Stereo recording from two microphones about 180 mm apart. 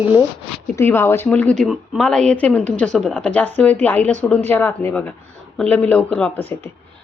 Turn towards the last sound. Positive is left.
turn(degrees=10)  # may be behind; listen again after turning